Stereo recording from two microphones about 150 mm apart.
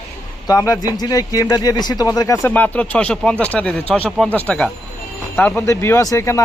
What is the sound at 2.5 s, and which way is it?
A man's voice, 10° left (ahead or behind).